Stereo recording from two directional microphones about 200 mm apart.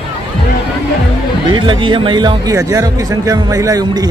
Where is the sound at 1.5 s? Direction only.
25° right (ahead or behind).